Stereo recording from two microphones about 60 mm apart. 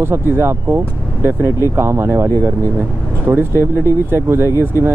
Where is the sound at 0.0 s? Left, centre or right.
Right.